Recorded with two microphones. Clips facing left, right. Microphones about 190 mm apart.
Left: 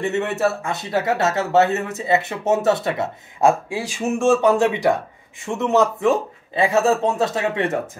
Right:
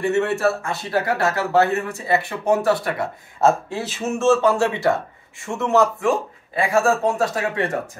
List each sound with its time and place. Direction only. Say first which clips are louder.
0.0 s speech: right 1 dB; 20° left (ahead or behind)